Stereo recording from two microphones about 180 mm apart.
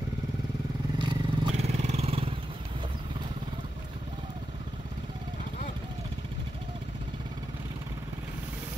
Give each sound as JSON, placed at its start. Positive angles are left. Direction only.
{"t": 0.9, "sound": "vehicle", "side_deg": -25}
{"t": 1.5, "sound": "vehicle", "side_deg": -35}